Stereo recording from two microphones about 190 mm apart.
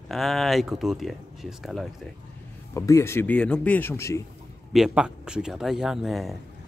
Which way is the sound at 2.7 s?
15° left (ahead or behind).